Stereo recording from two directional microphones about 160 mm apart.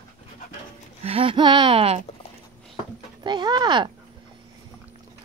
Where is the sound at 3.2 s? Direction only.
25° right (ahead or behind).